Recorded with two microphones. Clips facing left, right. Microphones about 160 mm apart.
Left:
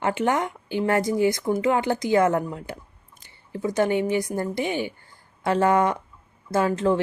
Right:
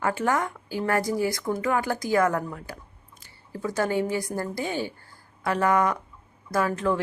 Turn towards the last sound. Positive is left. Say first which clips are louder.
# left 3 dB
turn(degrees=25)  # may be behind; listen again after turning